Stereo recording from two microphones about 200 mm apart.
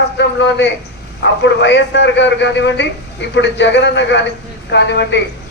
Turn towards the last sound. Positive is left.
turn(degrees=60)  # may be behind; listen again after turning